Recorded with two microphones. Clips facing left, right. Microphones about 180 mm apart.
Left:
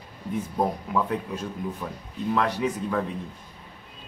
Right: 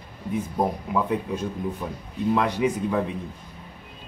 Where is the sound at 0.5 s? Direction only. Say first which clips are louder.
Even; 15° right (ahead or behind).